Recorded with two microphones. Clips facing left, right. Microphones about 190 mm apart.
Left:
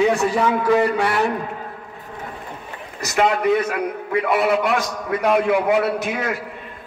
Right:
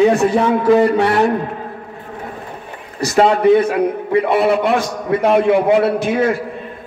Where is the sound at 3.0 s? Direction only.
30° right (ahead or behind).